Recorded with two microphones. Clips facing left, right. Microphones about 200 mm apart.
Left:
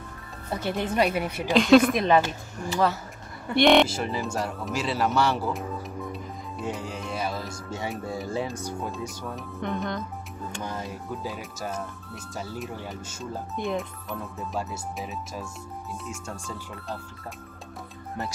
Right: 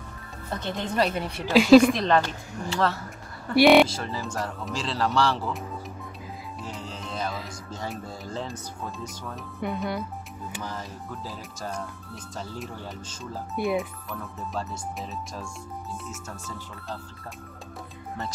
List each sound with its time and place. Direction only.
0.5 s a woman's voice: 10° left (ahead or behind)
3.5 s speech: 5° right (ahead or behind)
4.0 s a woman's voice: 20° left (ahead or behind)
4.6 s speech: 5° left (ahead or behind)
6.6 s music: 15° left (ahead or behind)
7.3 s speech: 10° left (ahead or behind); by 10.0 s 10° right (ahead or behind)
10.6 s speech: 25° left (ahead or behind)
12.4 s speech: 5° left (ahead or behind)